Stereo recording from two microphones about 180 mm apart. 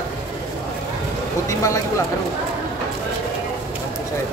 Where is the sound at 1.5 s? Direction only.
15° left (ahead or behind).